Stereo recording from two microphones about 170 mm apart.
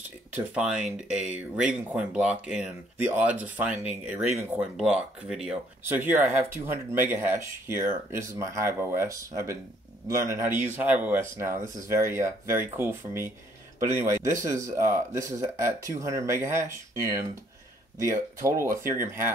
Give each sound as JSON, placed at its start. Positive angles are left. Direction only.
{"t": 0.3, "sound": "speech", "side_deg": -5}